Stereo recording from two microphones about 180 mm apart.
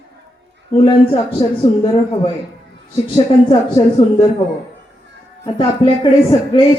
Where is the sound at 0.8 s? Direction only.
30° left (ahead or behind).